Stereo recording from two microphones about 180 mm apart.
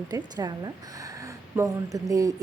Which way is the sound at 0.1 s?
20° right (ahead or behind).